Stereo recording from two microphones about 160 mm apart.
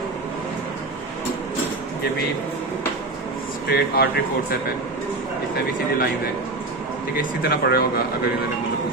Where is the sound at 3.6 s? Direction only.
80° left.